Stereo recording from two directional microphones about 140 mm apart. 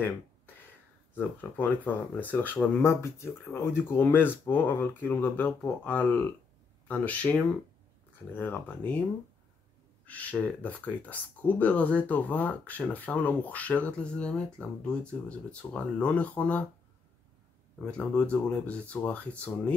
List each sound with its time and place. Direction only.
1.1 s speech: 15° left (ahead or behind)
10.0 s speech: 10° left (ahead or behind)
17.8 s speech: 10° left (ahead or behind)